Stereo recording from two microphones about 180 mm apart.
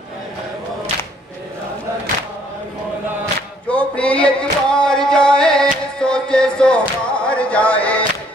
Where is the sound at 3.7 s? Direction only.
5° left (ahead or behind).